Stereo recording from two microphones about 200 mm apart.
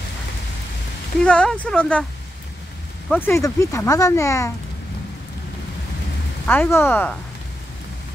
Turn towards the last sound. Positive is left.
turn(degrees=10)  # may be behind; listen again after turning